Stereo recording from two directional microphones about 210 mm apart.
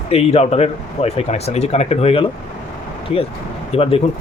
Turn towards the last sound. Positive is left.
turn(degrees=30)  # may be behind; listen again after turning